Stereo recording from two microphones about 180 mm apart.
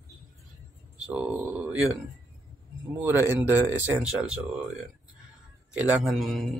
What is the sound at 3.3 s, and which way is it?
A man's voice, 10° right (ahead or behind).